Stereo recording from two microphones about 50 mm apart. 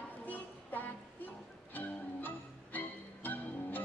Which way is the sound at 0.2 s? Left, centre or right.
Left.